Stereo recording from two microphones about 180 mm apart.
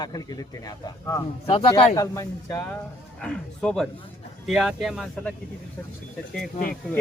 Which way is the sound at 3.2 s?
5° left (ahead or behind).